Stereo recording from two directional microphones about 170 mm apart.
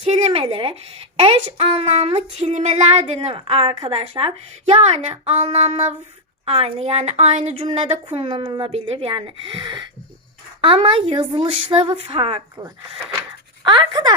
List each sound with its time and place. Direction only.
0.0 s speech: 35° right (ahead or behind)